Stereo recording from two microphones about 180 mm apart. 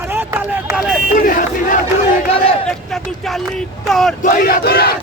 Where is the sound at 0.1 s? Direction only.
10° right (ahead or behind).